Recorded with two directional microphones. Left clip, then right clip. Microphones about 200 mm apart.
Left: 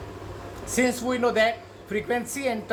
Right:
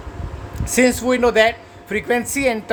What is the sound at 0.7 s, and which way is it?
Speech, 60° right (ahead or behind).